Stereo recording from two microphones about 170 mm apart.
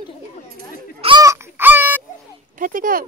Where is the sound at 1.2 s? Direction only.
15° right (ahead or behind).